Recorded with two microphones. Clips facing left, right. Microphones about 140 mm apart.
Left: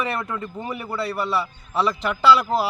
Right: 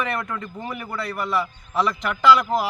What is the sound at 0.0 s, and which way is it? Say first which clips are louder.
A man's voice: left 1 dB; 30° left (ahead or behind).